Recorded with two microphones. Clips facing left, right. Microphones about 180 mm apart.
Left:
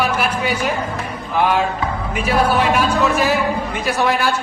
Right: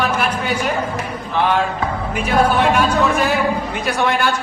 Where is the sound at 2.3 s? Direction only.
5° left (ahead or behind).